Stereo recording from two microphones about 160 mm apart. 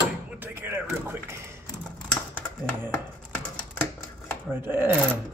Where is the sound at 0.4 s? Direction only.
15° right (ahead or behind).